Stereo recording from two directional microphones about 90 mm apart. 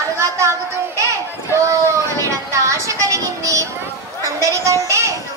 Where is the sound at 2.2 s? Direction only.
35° right (ahead or behind).